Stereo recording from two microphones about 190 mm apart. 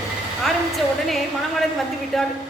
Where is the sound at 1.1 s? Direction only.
Centre (ahead or behind).